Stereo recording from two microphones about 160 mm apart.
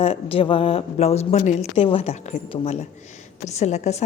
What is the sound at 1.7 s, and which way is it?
A woman's voice, 35° left (ahead or behind).